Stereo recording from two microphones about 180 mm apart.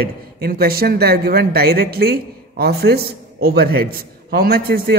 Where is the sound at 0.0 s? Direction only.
55° right (ahead or behind).